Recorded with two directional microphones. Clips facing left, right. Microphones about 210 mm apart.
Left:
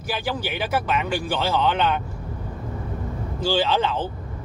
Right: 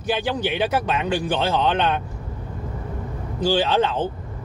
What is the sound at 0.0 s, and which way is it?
A man's voice, 20° right (ahead or behind).